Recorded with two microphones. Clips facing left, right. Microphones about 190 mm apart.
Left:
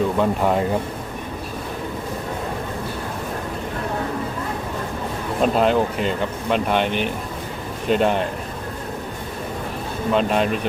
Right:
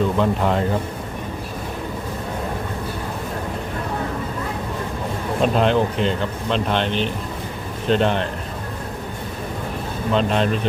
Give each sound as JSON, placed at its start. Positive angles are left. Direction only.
{"t": 0.2, "sound": "speech", "side_deg": 10}
{"t": 5.4, "sound": "speech", "side_deg": 5}
{"t": 10.2, "sound": "speech", "side_deg": 10}